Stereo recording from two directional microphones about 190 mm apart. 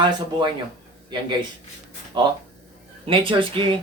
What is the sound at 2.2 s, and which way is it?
Speech, 25° right (ahead or behind).